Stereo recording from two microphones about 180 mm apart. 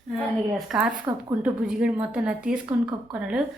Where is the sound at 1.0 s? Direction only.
20° right (ahead or behind).